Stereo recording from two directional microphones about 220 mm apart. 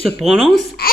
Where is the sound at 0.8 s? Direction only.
45° left (ahead or behind).